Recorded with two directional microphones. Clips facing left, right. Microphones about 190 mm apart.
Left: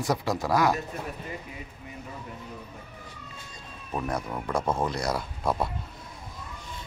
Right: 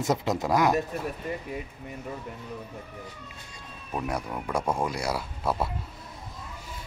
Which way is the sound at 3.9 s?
10° right (ahead or behind).